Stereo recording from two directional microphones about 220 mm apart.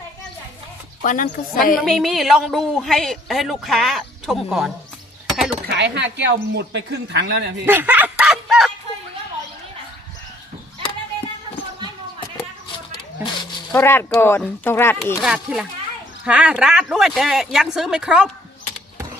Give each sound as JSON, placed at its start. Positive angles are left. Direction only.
{"t": 1.0, "sound": "a woman's voice", "side_deg": 35}
{"t": 1.8, "sound": "a woman's voice", "side_deg": 0}
{"t": 5.6, "sound": "speech", "side_deg": -50}
{"t": 7.6, "sound": "snicker", "side_deg": -10}
{"t": 13.4, "sound": "speech", "side_deg": 10}
{"t": 15.2, "sound": "a woman's voice", "side_deg": -5}